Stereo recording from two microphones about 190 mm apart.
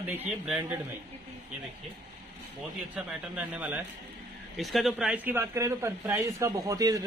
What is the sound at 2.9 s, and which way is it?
A man's voice, 5° right (ahead or behind).